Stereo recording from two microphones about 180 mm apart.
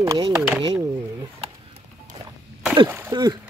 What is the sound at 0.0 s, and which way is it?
Speech, 20° right (ahead or behind).